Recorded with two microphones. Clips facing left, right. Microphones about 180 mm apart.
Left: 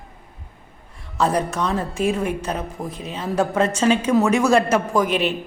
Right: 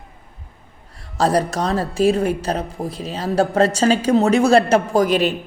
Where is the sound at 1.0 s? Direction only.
35° right (ahead or behind).